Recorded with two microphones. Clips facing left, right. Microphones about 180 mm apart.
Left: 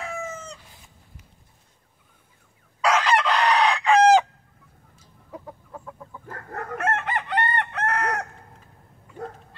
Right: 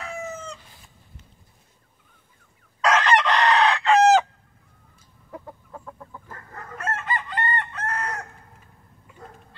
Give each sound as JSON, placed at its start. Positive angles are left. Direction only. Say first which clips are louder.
{"t": 2.8, "sound": "chicken", "louder": "right 1 dB", "side_deg": 10}
{"t": 5.3, "sound": "chicken", "louder": "even", "side_deg": 5}
{"t": 6.3, "sound": "chicken", "louder": "left 9 dB", "side_deg": 65}